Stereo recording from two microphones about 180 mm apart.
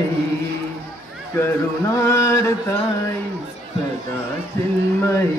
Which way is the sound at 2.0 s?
15° left (ahead or behind).